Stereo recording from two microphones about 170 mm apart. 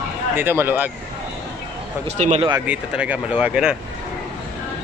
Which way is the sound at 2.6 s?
10° right (ahead or behind).